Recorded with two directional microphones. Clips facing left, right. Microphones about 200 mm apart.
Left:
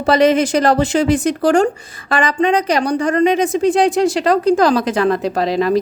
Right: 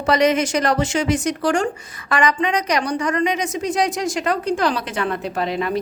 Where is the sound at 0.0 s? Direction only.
30° left (ahead or behind).